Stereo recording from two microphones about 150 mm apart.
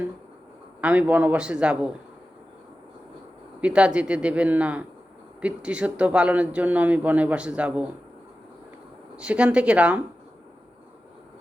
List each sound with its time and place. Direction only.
0.8 s speech: 10° right (ahead or behind)
3.6 s speech: 5° right (ahead or behind)
9.1 s speech: 10° right (ahead or behind)